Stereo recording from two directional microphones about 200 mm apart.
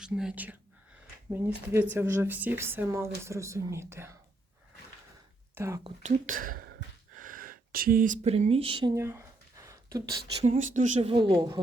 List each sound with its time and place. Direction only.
0.0 s speech: 5° right (ahead or behind)
5.5 s speech: 15° right (ahead or behind)
6.2 s speech: 45° right (ahead or behind); by 8.9 s 25° right (ahead or behind)
9.0 s a sound: 15° right (ahead or behind)
10.4 s speech: 35° right (ahead or behind); by 11.6 s 20° right (ahead or behind)